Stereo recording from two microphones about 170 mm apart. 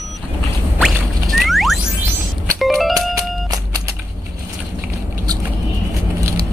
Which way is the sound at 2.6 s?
Centre (ahead or behind).